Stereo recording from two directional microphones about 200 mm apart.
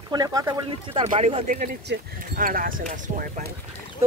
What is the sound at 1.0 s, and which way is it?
Speech, 30° right (ahead or behind).